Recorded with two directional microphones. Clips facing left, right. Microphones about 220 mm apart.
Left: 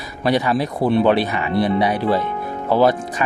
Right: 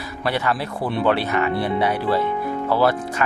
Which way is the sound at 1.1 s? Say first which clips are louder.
Left 2 dB; 15° left (ahead or behind).